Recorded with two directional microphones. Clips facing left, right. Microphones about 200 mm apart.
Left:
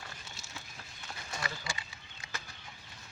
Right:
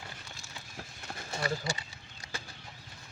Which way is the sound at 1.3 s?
40° right (ahead or behind).